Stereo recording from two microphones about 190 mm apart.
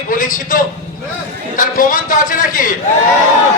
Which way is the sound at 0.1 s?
45° left (ahead or behind).